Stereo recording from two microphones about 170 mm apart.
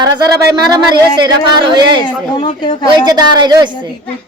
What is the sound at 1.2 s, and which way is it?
A woman's voice, 25° right (ahead or behind).